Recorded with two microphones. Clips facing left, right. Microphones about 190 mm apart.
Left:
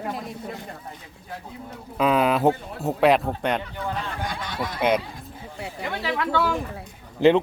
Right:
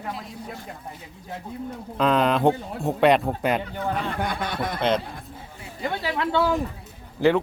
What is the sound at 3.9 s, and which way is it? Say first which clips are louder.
Speech: right 4 dB; 55° right (ahead or behind).